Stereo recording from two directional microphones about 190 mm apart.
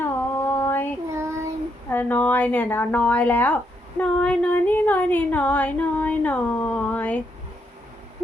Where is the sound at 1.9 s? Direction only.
10° left (ahead or behind).